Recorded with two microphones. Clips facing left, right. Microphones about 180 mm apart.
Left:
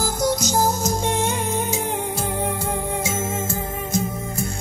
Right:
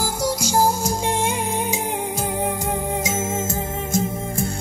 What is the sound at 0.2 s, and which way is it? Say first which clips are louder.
Music: right 1 dB; 10° right (ahead or behind).